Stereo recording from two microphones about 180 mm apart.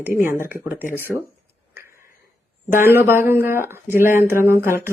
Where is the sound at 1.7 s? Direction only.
15° right (ahead or behind).